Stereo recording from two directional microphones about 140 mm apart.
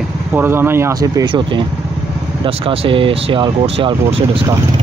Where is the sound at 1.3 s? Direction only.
35° right (ahead or behind).